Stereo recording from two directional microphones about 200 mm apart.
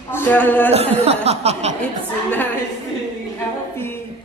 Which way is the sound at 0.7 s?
30° right (ahead or behind).